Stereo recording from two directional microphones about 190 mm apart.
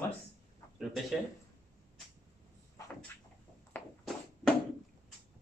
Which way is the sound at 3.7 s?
10° left (ahead or behind).